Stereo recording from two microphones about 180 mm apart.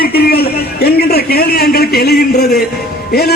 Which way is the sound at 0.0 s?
60° left (ahead or behind).